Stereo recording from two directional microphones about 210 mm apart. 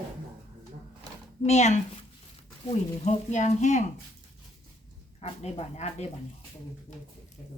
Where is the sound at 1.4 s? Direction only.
30° left (ahead or behind).